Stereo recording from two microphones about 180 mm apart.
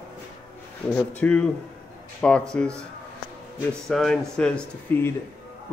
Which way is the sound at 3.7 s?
5° left (ahead or behind).